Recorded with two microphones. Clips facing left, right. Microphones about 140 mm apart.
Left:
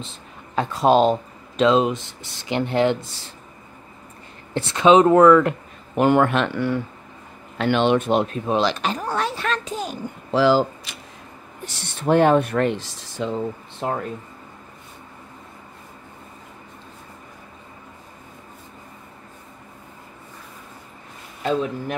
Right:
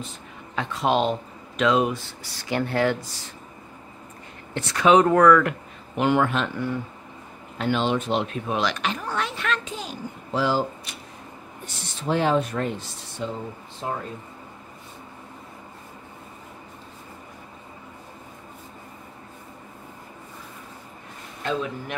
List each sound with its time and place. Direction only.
0.0 s speech: 30° left (ahead or behind)
1.6 s speech: 25° left (ahead or behind)
4.6 s speech: 25° left (ahead or behind)
5.9 s a man's voice: 50° left (ahead or behind)
8.5 s a child's voice: 30° left (ahead or behind)
10.3 s speech: 90° left
11.6 s speech: 75° left (ahead or behind)
13.8 s speech: 70° left (ahead or behind)